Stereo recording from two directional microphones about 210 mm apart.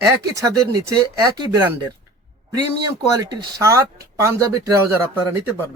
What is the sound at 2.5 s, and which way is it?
Speech, 15° right (ahead or behind).